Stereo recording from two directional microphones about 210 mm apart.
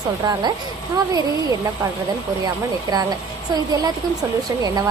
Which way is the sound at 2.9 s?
20° right (ahead or behind).